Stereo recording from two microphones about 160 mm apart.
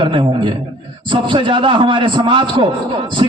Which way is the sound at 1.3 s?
30° right (ahead or behind).